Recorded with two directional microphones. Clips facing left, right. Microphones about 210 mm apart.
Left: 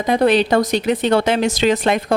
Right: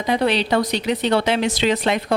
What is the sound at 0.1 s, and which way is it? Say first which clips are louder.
A woman's voice: left 4 dB; 45° left (ahead or behind).